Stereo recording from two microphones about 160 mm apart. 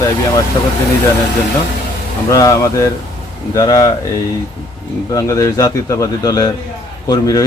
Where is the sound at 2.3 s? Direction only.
20° left (ahead or behind).